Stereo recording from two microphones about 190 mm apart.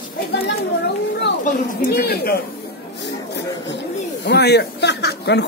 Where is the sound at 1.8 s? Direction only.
50° left (ahead or behind).